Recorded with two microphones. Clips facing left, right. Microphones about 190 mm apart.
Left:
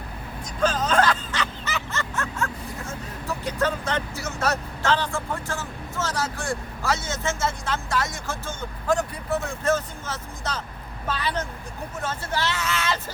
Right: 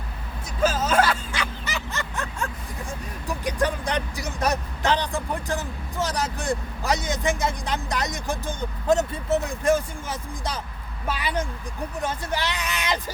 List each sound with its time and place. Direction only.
0.6 s snicker: 5° right (ahead or behind)
3.2 s speech: 15° right (ahead or behind)